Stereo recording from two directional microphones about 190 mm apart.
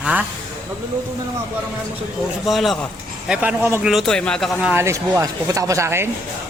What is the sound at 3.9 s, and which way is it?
Speech, centre (ahead or behind).